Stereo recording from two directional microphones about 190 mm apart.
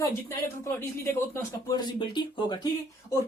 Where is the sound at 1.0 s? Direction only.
20° left (ahead or behind).